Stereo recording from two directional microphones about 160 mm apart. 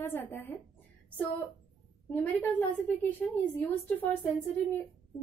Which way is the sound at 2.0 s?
10° left (ahead or behind).